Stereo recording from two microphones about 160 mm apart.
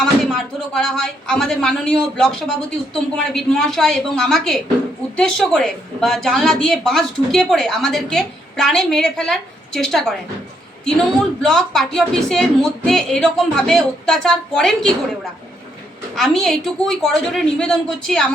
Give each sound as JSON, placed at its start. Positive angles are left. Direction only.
{"t": 0.0, "sound": "a woman's voice", "side_deg": 5}
{"t": 11.4, "sound": "a woman's voice", "side_deg": 0}
{"t": 16.1, "sound": "a woman's voice", "side_deg": 0}